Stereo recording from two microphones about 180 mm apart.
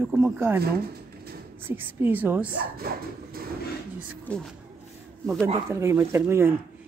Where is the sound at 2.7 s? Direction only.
55° right (ahead or behind).